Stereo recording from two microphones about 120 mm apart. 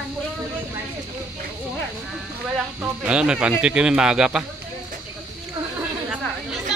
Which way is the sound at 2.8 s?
10° right (ahead or behind).